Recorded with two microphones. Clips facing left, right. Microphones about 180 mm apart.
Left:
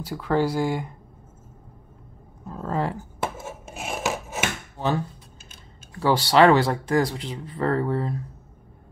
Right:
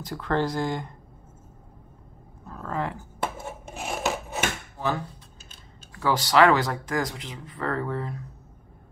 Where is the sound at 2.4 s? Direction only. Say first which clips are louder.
Left 4 dB; 25° left (ahead or behind).